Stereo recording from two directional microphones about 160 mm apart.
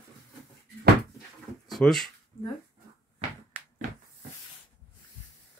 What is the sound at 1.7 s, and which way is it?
Speech, centre (ahead or behind).